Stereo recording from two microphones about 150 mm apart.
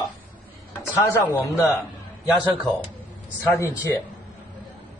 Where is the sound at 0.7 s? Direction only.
15° left (ahead or behind).